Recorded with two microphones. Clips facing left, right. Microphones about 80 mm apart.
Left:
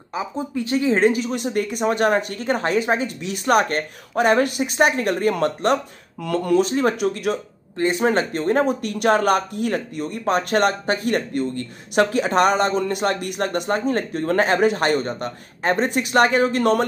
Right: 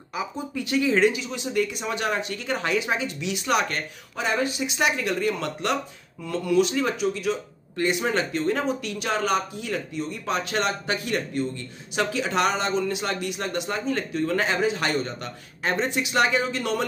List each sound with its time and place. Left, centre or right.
0.1 s speech: left
6.2 s speech: left
6.5 s speech: left
7.7 s speech: left